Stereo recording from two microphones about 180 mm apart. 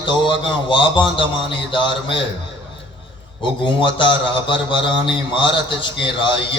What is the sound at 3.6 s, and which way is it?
A man's voice, 25° left (ahead or behind).